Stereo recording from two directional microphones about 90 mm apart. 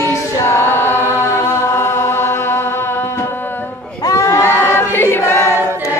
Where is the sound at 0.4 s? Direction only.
30° left (ahead or behind).